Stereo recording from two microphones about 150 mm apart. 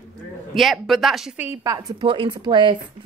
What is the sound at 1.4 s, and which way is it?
Speech, 20° right (ahead or behind).